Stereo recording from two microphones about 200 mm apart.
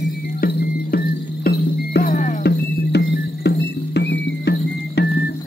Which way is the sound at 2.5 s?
55° left (ahead or behind).